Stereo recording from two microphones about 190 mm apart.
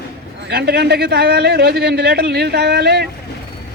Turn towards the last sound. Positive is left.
turn(degrees=-60)  # may be behind; listen again after turning